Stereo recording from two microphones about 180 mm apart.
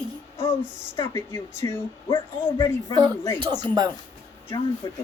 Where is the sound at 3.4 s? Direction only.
20° right (ahead or behind).